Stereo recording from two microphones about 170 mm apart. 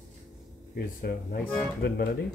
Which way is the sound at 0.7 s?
65° left (ahead or behind).